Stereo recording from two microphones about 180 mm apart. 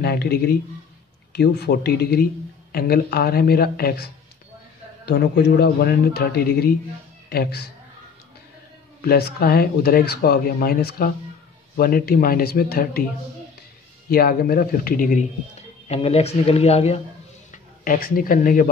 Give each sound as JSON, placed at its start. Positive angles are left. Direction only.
{"t": 0.0, "sound": "speech", "side_deg": 60}
{"t": 9.0, "sound": "speech", "side_deg": 60}
{"t": 14.0, "sound": "speech", "side_deg": 55}
{"t": 15.9, "sound": "speech", "side_deg": 35}
{"t": 17.5, "sound": "speech", "side_deg": 50}